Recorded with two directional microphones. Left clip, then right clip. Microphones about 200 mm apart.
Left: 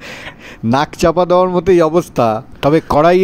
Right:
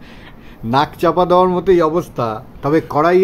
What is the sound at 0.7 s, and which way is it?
Speech, 35° left (ahead or behind).